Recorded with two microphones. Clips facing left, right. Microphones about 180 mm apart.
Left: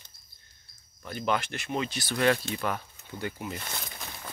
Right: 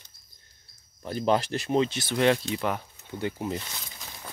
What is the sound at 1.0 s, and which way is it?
Speech, 35° right (ahead or behind).